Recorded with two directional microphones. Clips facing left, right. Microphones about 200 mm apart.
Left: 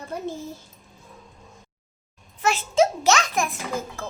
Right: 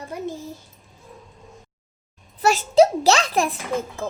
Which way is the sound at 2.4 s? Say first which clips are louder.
Right 5 dB; 40° right (ahead or behind).